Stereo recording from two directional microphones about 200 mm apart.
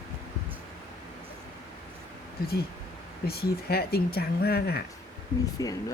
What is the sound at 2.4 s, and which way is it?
Speech, 50° left (ahead or behind).